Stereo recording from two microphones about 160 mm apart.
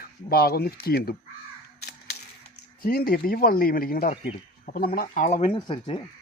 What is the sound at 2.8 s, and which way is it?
Speech, 70° left (ahead or behind).